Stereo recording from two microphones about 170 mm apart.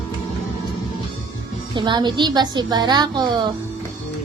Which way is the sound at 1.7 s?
25° right (ahead or behind).